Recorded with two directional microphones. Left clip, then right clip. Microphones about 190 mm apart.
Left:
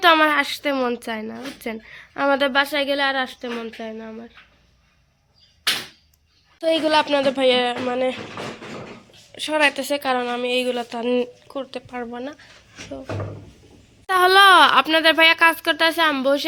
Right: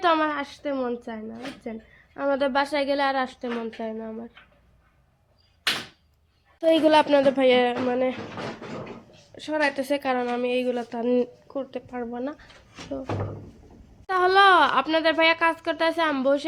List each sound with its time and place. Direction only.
0.0 s a woman's voice: 10° left (ahead or behind)
2.4 s speech: centre (ahead or behind)
6.6 s a woman's voice: 20° right (ahead or behind)
7.2 s a woman's voice: 15° right (ahead or behind)
9.3 s a woman's voice: centre (ahead or behind)
9.7 s a woman's voice: 10° right (ahead or behind)
12.2 s a woman's voice: 25° right (ahead or behind)
14.1 s speech: 5° left (ahead or behind)